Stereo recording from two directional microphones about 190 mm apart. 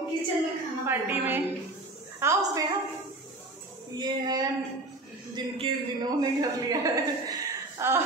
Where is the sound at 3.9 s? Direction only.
20° right (ahead or behind).